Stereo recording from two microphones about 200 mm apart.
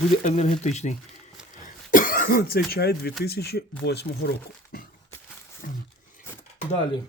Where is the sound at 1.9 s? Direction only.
40° left (ahead or behind).